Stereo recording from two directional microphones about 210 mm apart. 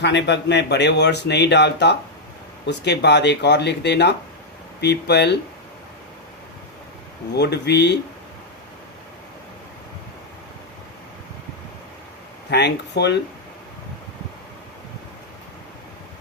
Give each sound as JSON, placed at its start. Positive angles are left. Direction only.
{"t": 0.0, "sound": "speech", "side_deg": 55}
{"t": 7.3, "sound": "speech", "side_deg": 55}
{"t": 12.5, "sound": "speech", "side_deg": 55}